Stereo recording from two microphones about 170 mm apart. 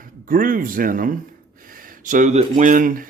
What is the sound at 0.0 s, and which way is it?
Speech, 55° right (ahead or behind).